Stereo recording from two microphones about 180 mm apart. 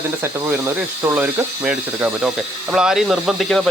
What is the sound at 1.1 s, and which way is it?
Speech, 5° right (ahead or behind).